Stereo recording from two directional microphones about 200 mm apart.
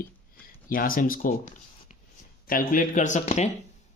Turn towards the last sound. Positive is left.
turn(degrees=40)  # may be behind; listen again after turning